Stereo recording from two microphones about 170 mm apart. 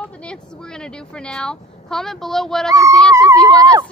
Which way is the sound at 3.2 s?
20° right (ahead or behind).